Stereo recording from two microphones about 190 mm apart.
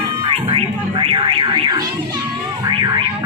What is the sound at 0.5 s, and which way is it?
Music, 30° right (ahead or behind).